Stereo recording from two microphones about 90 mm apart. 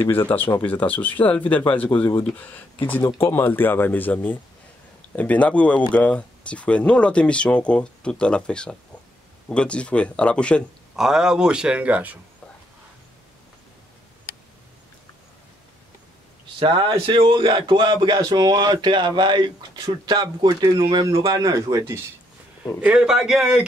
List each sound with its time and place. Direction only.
0.0 s speech: 25° left (ahead or behind)
11.0 s speech: 5° right (ahead or behind)
16.5 s speech: 70° right (ahead or behind); by 20.5 s 55° right (ahead or behind)
21.3 s speech: 40° right (ahead or behind)
22.8 s speech: 10° right (ahead or behind)